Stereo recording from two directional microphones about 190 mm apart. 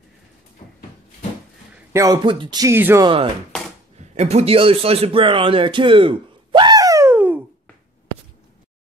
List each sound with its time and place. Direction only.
1.9 s speech: 15° right (ahead or behind)
4.0 s speech: 35° right (ahead or behind); by 7.3 s 10° right (ahead or behind)